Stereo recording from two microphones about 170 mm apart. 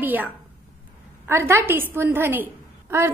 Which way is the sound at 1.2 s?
15° right (ahead or behind).